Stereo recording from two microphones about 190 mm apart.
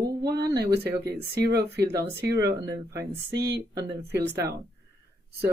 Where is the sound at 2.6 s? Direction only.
15° right (ahead or behind).